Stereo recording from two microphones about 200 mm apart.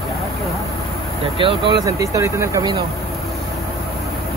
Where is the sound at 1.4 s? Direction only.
25° right (ahead or behind).